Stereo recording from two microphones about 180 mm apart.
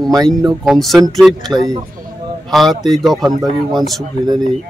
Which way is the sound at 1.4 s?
20° right (ahead or behind).